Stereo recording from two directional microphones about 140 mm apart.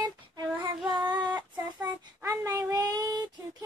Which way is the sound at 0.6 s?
30° right (ahead or behind).